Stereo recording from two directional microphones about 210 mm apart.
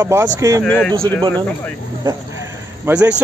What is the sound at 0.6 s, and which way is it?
Dishes, 5° left (ahead or behind).